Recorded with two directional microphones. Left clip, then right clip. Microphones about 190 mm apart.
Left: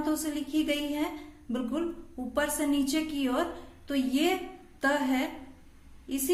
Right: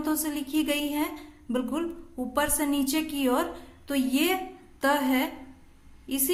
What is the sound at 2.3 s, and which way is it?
A woman's voice, 20° right (ahead or behind).